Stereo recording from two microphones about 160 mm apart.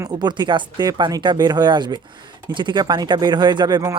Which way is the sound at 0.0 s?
25° right (ahead or behind).